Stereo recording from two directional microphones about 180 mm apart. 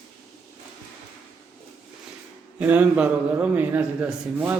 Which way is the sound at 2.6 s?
10° right (ahead or behind).